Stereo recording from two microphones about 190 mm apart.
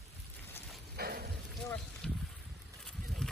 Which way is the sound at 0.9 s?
55° right (ahead or behind).